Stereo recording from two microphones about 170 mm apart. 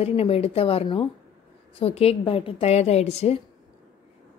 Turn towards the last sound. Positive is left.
turn(degrees=40)  # may be behind; listen again after turning